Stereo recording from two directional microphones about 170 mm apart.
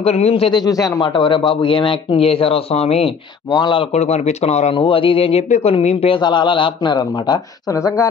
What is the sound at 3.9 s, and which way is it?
A man's voice, 40° left (ahead or behind).